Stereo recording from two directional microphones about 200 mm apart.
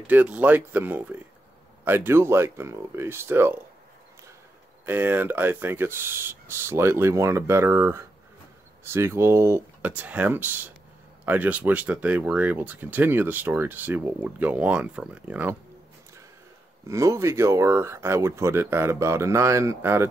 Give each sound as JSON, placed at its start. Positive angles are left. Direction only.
{"t": 0.0, "sound": "speech", "side_deg": -10}
{"t": 4.8, "sound": "speech", "side_deg": -10}
{"t": 16.8, "sound": "speech", "side_deg": -15}